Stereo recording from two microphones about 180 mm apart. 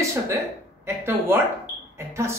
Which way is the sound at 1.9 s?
15° right (ahead or behind).